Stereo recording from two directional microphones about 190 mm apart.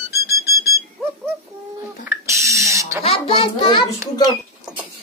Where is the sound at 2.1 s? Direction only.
15° right (ahead or behind).